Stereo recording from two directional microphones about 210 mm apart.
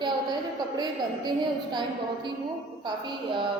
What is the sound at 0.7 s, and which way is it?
A woman's voice, 20° right (ahead or behind).